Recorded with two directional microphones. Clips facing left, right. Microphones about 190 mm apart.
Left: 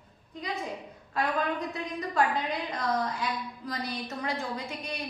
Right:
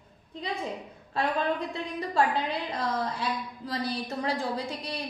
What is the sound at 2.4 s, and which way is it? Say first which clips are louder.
A woman's voice: even; 30° right (ahead or behind).